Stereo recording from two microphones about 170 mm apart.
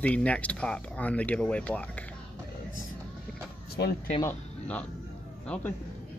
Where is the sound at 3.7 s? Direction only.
70° left (ahead or behind).